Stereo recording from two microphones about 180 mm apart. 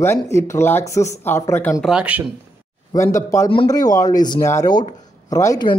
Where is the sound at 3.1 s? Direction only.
20° left (ahead or behind).